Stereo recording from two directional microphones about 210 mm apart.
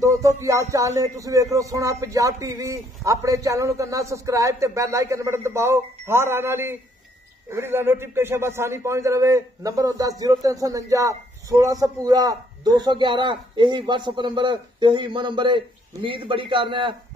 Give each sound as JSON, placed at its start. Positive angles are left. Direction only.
{"t": 0.4, "sound": "a man's voice", "side_deg": -15}